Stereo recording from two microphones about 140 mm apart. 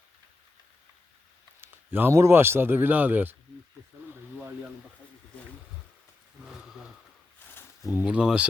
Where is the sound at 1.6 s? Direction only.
15° right (ahead or behind).